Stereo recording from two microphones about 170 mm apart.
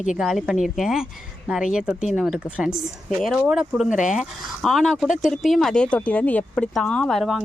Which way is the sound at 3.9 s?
45° left (ahead or behind).